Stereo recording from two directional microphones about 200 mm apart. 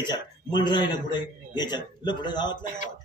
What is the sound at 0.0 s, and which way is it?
A man's voice, 20° left (ahead or behind).